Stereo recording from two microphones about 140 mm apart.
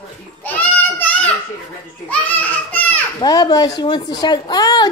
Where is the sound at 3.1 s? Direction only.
25° left (ahead or behind).